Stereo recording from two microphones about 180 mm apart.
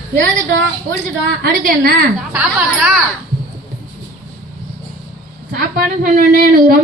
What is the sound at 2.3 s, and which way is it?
Speech, 5° right (ahead or behind).